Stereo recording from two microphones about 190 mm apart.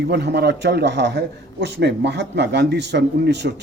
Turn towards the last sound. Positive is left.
turn(degrees=-65)  # may be behind; listen again after turning